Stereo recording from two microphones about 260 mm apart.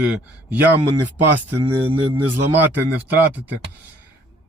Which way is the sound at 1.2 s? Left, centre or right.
Right.